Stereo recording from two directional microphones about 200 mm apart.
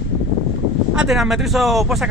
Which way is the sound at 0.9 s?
5° right (ahead or behind).